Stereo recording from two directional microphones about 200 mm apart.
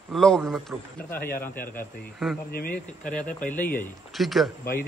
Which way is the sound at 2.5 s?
45° left (ahead or behind).